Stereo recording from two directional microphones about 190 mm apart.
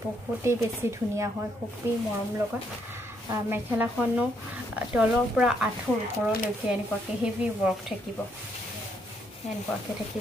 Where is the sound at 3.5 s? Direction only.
10° right (ahead or behind).